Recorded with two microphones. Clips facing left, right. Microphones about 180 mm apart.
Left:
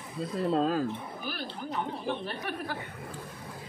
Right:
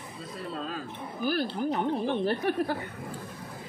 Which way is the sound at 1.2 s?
45° right (ahead or behind).